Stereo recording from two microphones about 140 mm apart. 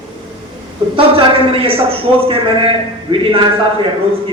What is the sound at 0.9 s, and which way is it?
A man's voice, 40° right (ahead or behind).